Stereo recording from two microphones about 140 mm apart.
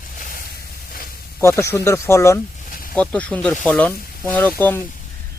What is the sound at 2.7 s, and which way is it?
Snake, 90° left.